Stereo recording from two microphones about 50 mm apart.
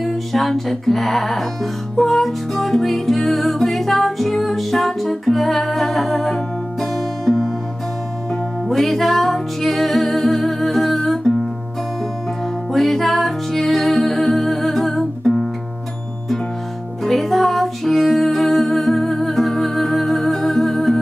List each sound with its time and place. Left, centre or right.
0.0 s music: centre
8.6 s music: centre
12.7 s music: centre
17.0 s music: centre